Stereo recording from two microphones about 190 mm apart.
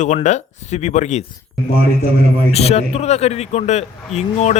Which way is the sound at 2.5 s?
35° left (ahead or behind).